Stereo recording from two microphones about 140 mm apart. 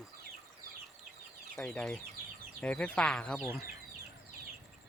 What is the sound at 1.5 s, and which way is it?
Speech, 5° left (ahead or behind).